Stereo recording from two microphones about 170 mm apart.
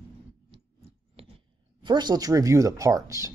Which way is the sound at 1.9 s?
25° right (ahead or behind).